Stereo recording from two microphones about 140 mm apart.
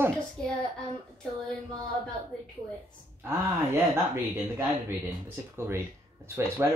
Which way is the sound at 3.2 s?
15° right (ahead or behind).